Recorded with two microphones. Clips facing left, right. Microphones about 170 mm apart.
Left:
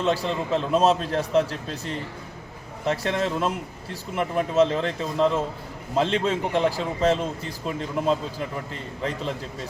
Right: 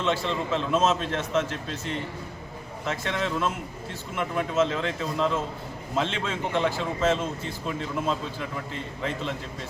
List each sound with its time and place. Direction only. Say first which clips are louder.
0.0 s a man's voice: left 2 dB; 35° left (ahead or behind)